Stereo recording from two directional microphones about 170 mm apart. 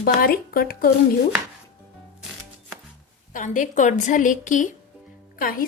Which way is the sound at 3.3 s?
50° left (ahead or behind).